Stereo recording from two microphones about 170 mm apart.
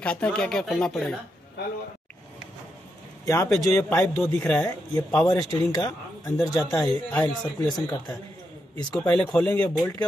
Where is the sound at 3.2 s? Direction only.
20° left (ahead or behind).